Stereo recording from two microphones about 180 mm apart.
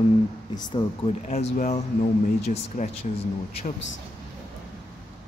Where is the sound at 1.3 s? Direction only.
35° left (ahead or behind).